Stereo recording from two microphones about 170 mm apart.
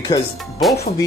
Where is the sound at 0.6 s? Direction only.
Centre (ahead or behind).